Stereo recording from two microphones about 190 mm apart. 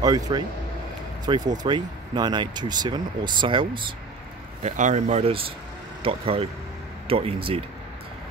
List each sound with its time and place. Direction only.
0.0 s speech: 20° right (ahead or behind)
4.6 s speech: 40° right (ahead or behind)